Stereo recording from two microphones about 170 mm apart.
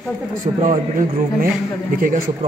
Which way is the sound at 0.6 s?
50° right (ahead or behind).